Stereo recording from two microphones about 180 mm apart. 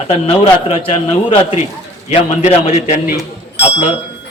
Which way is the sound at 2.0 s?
40° left (ahead or behind).